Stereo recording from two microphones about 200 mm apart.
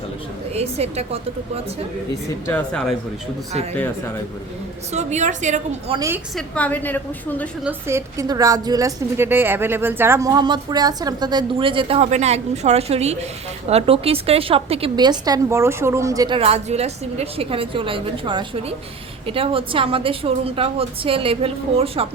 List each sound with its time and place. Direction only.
0.5 s a woman's voice: 30° right (ahead or behind)
2.5 s speech: 5° left (ahead or behind)
4.9 s a woman's voice: 35° right (ahead or behind)
6.3 s a woman's voice: 5° left (ahead or behind)
7.6 s a woman's voice: 10° right (ahead or behind); by 22.0 s 30° right (ahead or behind)